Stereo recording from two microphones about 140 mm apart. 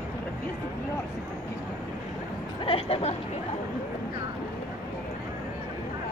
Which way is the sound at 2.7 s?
40° left (ahead or behind).